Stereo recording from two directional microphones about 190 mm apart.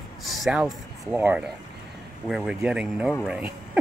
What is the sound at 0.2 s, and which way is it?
Speech, centre (ahead or behind).